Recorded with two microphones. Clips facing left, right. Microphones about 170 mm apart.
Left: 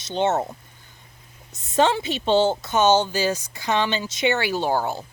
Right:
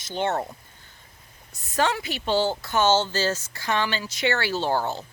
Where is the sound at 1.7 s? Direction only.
25° left (ahead or behind).